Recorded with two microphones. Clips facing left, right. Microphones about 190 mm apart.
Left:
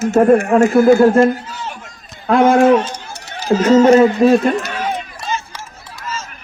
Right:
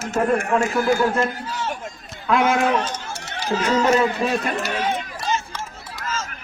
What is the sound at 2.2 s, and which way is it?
A man's voice, 50° left (ahead or behind).